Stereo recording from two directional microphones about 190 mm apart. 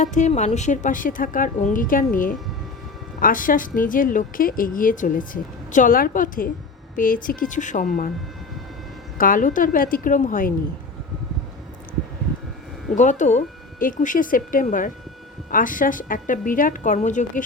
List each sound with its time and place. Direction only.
0.0 s speech: 40° left (ahead or behind)
3.2 s speech: 45° left (ahead or behind)
9.1 s speech: 45° left (ahead or behind)
13.0 s speech: 40° left (ahead or behind)